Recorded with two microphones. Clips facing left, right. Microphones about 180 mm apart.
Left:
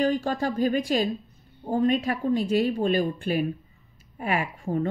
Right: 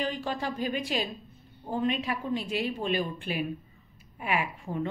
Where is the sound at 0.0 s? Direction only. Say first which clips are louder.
Left 7 dB; 45° left (ahead or behind).